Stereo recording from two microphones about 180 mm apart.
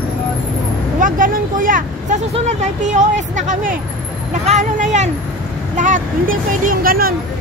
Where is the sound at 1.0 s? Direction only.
50° right (ahead or behind).